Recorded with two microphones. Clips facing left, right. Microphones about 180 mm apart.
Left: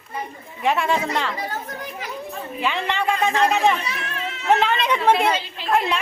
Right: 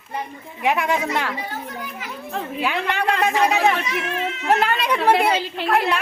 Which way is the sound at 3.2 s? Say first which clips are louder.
Even; 10° right (ahead or behind).